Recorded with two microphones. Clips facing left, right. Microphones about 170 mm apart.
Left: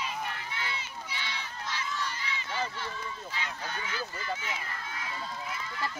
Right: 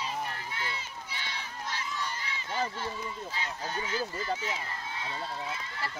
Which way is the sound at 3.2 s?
35° right (ahead or behind).